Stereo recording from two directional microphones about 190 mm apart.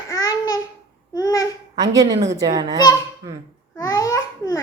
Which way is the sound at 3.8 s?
15° left (ahead or behind).